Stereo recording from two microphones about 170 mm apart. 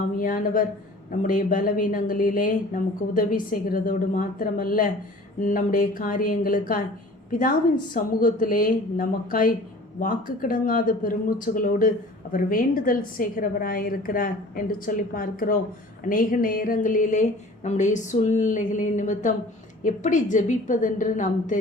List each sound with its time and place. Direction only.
0.2 s a woman's voice: 55° left (ahead or behind)